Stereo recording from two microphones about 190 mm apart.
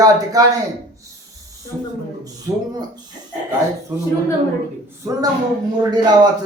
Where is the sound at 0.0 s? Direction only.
20° right (ahead or behind).